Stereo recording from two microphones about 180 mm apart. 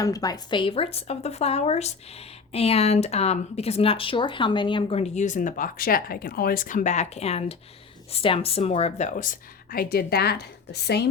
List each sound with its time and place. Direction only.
0.0 s speech: 20° left (ahead or behind); by 11.1 s 65° left (ahead or behind)